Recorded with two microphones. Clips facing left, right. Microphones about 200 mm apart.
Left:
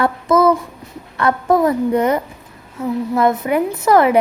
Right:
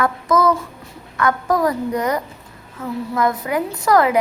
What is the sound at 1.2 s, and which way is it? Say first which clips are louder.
A woman's voice: left 3 dB; 30° left (ahead or behind).